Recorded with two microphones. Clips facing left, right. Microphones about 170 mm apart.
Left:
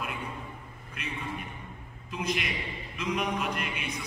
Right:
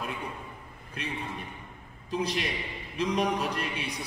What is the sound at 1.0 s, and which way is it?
A man's voice, 35° right (ahead or behind).